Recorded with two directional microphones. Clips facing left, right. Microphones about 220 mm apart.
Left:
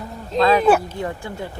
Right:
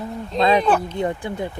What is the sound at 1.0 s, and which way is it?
Speech, 20° right (ahead or behind).